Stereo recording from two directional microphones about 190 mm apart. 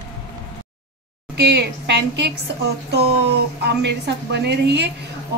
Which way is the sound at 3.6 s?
65° right (ahead or behind).